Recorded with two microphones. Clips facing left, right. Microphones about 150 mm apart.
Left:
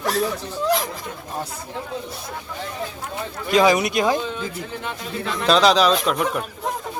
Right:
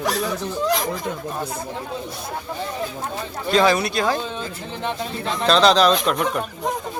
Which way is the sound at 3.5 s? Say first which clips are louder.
Left 1 dB; 15° left (ahead or behind).